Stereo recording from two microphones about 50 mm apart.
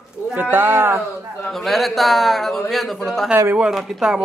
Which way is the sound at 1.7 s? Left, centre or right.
Centre.